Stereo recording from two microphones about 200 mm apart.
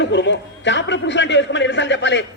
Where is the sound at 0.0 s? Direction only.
60° left (ahead or behind).